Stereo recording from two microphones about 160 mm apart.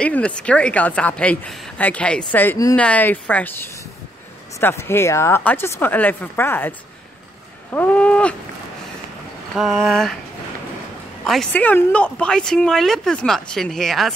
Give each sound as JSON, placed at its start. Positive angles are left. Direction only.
{"t": 0.0, "sound": "a woman's voice", "side_deg": 5}
{"t": 4.6, "sound": "a woman's voice", "side_deg": 15}
{"t": 7.7, "sound": "cattle", "side_deg": 10}
{"t": 9.6, "sound": "speech", "side_deg": 0}
{"t": 11.2, "sound": "speech", "side_deg": 5}